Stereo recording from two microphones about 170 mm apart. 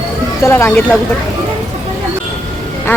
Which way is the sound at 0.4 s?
15° left (ahead or behind).